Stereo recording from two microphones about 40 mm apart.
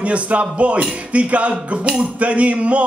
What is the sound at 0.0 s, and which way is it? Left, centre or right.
Music, right.